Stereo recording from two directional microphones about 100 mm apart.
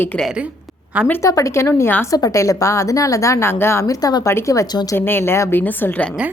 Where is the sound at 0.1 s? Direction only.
15° left (ahead or behind).